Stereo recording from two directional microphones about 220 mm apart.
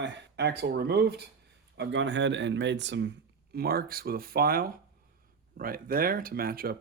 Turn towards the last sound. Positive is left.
turn(degrees=-40)  # may be behind; listen again after turning